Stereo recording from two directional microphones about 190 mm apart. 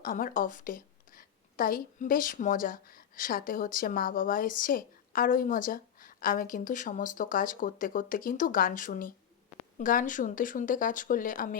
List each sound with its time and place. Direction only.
0.0 s a woman's voice: 45° left (ahead or behind)